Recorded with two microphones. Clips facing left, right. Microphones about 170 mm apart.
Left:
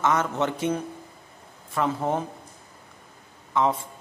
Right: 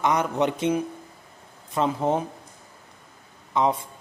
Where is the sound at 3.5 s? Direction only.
15° right (ahead or behind).